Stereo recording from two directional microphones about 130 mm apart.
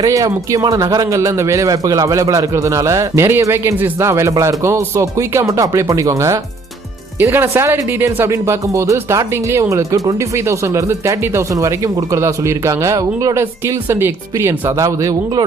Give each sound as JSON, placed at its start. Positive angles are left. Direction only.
{"t": 0.0, "sound": "speech", "side_deg": -25}